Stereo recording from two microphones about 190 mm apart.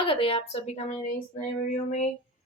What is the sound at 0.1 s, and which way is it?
Speech, 30° left (ahead or behind).